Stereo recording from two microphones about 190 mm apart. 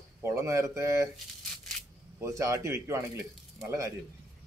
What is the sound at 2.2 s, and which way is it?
Speech, 15° right (ahead or behind).